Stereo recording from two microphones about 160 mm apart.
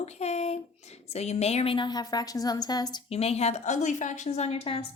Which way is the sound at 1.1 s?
45° left (ahead or behind).